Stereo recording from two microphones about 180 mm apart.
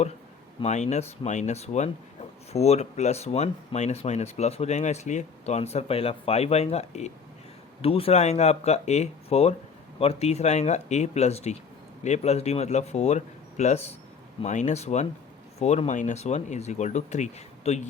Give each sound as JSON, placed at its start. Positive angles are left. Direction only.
{"t": 0.6, "sound": "speech", "side_deg": 40}